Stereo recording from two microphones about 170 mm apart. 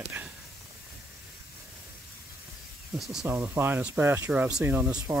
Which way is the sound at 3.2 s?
15° right (ahead or behind).